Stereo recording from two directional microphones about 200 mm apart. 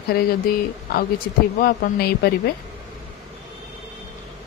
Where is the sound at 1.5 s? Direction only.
50° left (ahead or behind).